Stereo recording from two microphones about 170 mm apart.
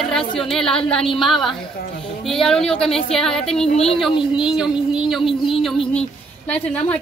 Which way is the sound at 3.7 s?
35° left (ahead or behind).